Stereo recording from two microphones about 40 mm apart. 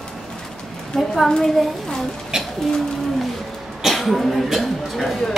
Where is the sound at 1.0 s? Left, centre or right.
Centre.